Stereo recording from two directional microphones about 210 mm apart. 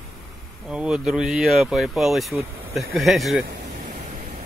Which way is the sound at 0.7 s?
5° right (ahead or behind).